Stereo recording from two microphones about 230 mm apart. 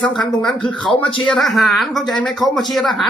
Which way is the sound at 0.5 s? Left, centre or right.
Left.